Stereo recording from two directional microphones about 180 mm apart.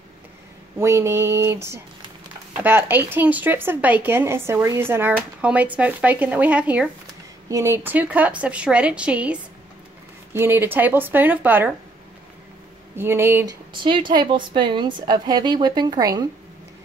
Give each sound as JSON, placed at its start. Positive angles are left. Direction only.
{"t": 0.7, "sound": "speech", "side_deg": -15}
{"t": 12.9, "sound": "speech", "side_deg": -15}
{"t": 13.8, "sound": "a woman's voice", "side_deg": -25}